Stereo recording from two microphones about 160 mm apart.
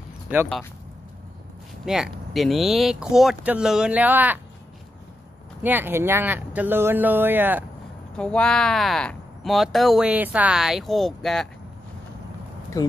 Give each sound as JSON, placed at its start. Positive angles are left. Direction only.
{"t": 1.9, "sound": "speech", "side_deg": 0}
{"t": 5.6, "sound": "speech", "side_deg": -10}
{"t": 8.2, "sound": "speech", "side_deg": 5}
{"t": 12.7, "sound": "speech", "side_deg": 20}